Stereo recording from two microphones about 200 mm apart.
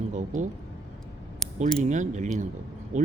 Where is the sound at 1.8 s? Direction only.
35° right (ahead or behind).